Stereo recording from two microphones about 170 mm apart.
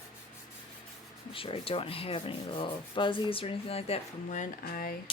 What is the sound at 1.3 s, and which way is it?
Speech, 35° left (ahead or behind).